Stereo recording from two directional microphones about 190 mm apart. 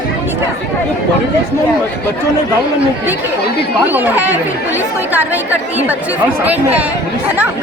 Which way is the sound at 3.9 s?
10° right (ahead or behind).